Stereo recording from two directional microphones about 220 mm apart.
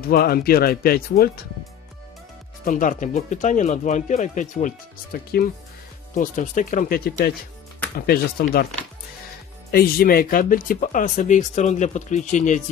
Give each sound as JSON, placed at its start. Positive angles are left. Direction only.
{"t": 0.0, "sound": "speech", "side_deg": 45}
{"t": 2.6, "sound": "speech", "side_deg": 35}
{"t": 9.7, "sound": "speech", "side_deg": 45}